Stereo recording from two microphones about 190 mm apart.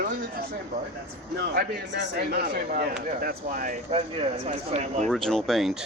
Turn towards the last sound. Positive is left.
turn(degrees=0)  # may be behind; listen again after turning